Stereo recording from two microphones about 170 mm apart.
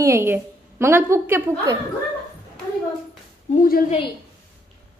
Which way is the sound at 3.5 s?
55° left (ahead or behind).